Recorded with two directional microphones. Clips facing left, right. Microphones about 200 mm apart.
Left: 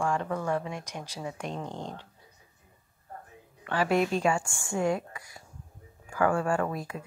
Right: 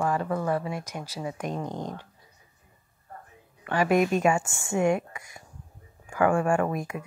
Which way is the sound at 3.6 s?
15° right (ahead or behind).